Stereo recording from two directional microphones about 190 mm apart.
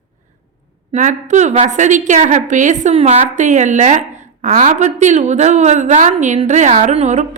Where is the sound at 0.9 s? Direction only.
40° right (ahead or behind).